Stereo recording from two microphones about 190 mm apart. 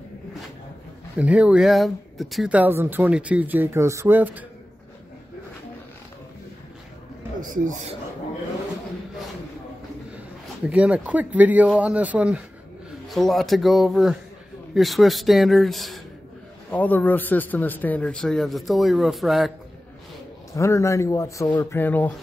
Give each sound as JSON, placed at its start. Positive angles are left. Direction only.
{"t": 1.1, "sound": "speech", "side_deg": -5}
{"t": 7.3, "sound": "speech", "side_deg": -45}
{"t": 10.7, "sound": "a man's voice", "side_deg": -5}
{"t": 20.5, "sound": "a man's voice", "side_deg": 15}